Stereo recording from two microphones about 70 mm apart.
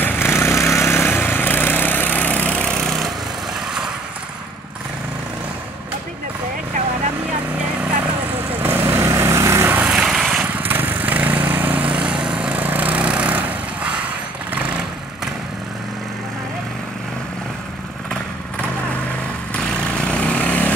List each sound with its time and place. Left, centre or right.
0.0 s a sound: left; by 3.1 s centre
8.6 s vehicle: right
9.8 s vehicle: centre
10.4 s vehicle: right
20.1 s vehicle: centre